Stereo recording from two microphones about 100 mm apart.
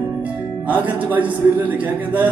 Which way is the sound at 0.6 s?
15° right (ahead or behind).